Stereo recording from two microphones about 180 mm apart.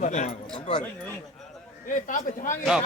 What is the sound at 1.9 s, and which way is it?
Speech, 45° left (ahead or behind).